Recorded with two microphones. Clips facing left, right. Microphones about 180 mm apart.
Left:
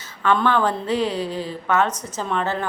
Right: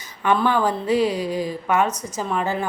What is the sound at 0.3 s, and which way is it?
A woman's voice, 10° right (ahead or behind).